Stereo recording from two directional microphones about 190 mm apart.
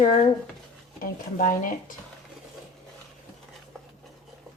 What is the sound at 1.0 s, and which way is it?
Speech, 45° left (ahead or behind).